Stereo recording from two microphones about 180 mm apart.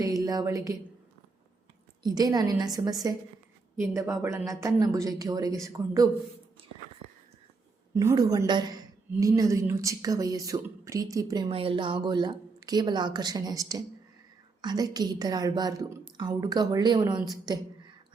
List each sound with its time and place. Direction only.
0.0 s a woman's voice: 20° right (ahead or behind)
2.0 s a woman's voice: 20° right (ahead or behind)
7.9 s a woman's voice: 20° right (ahead or behind)